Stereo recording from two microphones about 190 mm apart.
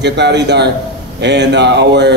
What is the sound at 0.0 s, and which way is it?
A man's voice, 65° right (ahead or behind).